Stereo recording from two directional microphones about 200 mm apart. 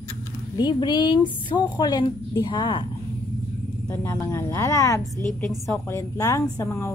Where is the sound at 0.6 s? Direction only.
20° left (ahead or behind).